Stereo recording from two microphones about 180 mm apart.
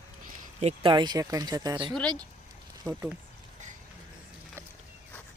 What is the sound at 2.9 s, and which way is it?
Speech, centre (ahead or behind).